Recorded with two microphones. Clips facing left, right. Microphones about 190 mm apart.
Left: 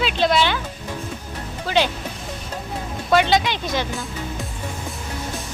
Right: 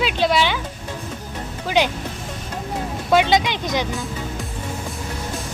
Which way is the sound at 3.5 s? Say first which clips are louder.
Right 1 dB; 15° right (ahead or behind).